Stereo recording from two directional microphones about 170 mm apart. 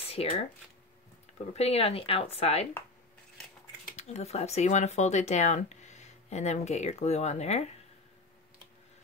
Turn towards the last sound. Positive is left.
turn(degrees=40)  # may be behind; listen again after turning